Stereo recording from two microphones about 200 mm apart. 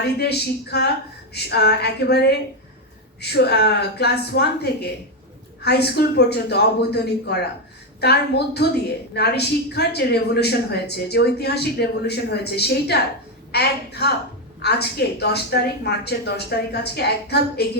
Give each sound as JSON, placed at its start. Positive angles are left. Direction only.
{"t": 0.2, "sound": "a woman's voice", "side_deg": 55}
{"t": 8.6, "sound": "a woman's voice", "side_deg": 55}